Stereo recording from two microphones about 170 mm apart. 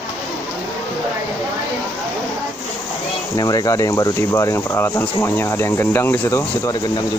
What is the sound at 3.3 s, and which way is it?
Speech, 20° left (ahead or behind).